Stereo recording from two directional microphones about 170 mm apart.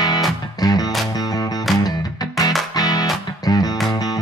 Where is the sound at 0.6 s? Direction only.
20° left (ahead or behind).